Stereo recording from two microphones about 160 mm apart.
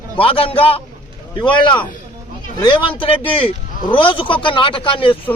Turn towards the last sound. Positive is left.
turn(degrees=35)  # may be behind; listen again after turning